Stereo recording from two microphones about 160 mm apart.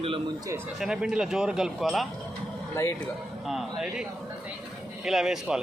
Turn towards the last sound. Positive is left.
turn(degrees=-5)  # may be behind; listen again after turning